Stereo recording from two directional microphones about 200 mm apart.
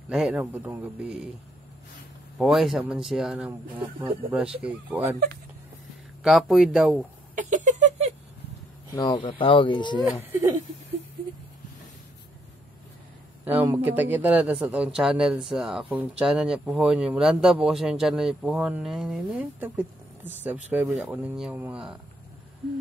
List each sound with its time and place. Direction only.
0.1 s a man's voice: 5° right (ahead or behind)
2.3 s speech: centre (ahead or behind)
4.6 s a man's voice: 5° right (ahead or behind)
6.2 s speech: centre (ahead or behind)
7.3 s a sound: 40° right (ahead or behind)
8.9 s speech: 20° left (ahead or behind)
10.3 s a man's voice: 10° right (ahead or behind)
13.5 s speech: 10° right (ahead or behind)